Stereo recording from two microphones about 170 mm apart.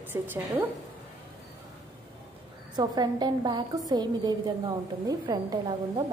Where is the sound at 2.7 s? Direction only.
25° right (ahead or behind).